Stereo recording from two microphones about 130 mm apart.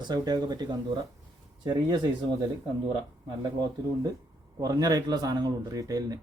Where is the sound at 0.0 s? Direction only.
30° right (ahead or behind).